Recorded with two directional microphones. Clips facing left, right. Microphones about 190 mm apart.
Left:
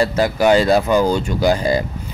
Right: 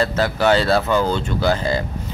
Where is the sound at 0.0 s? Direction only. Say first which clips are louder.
Left 3 dB; 15° left (ahead or behind).